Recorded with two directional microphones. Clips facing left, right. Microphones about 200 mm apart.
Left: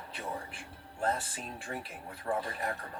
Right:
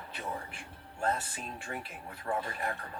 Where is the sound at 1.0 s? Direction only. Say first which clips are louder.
Even; 30° left (ahead or behind).